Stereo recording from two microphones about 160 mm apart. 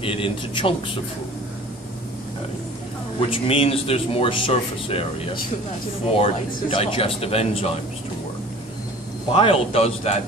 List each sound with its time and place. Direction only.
0.0 s a man's voice: 35° left (ahead or behind)
3.2 s a man's voice: 35° left (ahead or behind)
9.3 s a man's voice: 35° left (ahead or behind)